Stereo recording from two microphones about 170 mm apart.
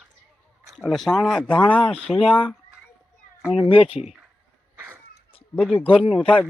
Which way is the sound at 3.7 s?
35° left (ahead or behind).